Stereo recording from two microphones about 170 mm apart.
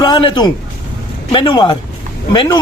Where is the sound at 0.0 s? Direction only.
30° left (ahead or behind).